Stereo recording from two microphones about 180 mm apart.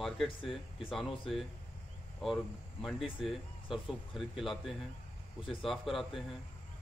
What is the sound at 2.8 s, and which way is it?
A man's voice, centre (ahead or behind).